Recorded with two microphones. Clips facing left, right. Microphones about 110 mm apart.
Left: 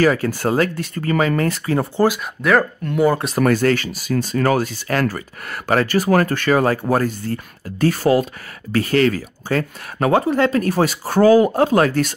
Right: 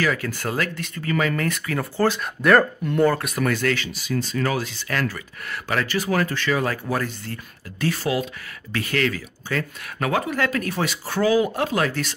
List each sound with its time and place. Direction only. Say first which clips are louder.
0.0 s speech: left 7 dB; 40° left (ahead or behind)
2.4 s speech: even; centre (ahead or behind)
3.1 s speech: left 4 dB; 25° left (ahead or behind)
3.3 s speech: left 7 dB; 40° left (ahead or behind)
8.7 s speech: left 8 dB; 35° left (ahead or behind)